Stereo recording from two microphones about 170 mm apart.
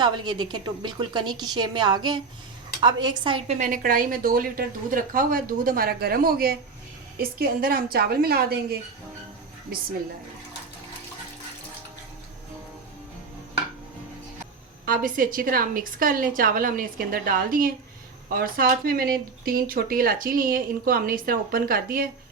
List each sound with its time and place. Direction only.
0.0 s a woman's voice: 25° right (ahead or behind)
3.6 s speech: 55° right (ahead or behind)
14.8 s speech: 55° right (ahead or behind)